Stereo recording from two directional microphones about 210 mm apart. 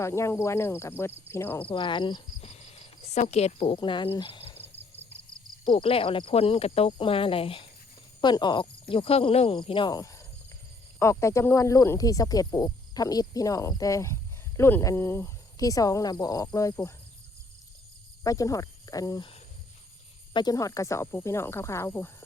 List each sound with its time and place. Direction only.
0.0 s speech: 10° left (ahead or behind)
1.6 s speech: 25° left (ahead or behind)
4.2 s cricket: 25° left (ahead or behind)
5.7 s speech: 25° left (ahead or behind)
18.2 s speech: 15° left (ahead or behind)